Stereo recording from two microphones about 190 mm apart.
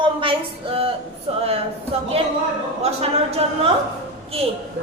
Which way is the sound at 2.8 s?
30° right (ahead or behind).